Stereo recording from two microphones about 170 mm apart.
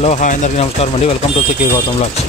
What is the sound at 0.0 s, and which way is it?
Speech, 45° left (ahead or behind).